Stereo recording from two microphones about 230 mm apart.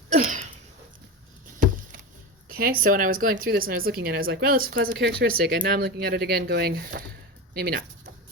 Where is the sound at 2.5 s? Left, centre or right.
Right.